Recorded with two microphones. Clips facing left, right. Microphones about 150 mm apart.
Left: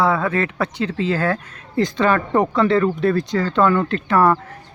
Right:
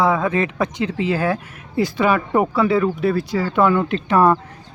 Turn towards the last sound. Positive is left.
turn(degrees=-15)  # may be behind; listen again after turning